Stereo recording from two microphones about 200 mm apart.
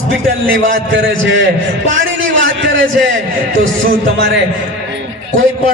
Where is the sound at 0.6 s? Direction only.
75° right (ahead or behind).